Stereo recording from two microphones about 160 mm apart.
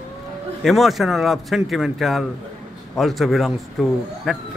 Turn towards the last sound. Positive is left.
turn(degrees=0)  # may be behind; listen again after turning